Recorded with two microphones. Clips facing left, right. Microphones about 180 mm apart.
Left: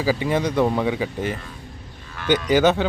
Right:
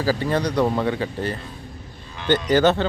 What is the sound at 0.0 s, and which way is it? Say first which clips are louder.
A man's voice: even; 15° left (ahead or behind).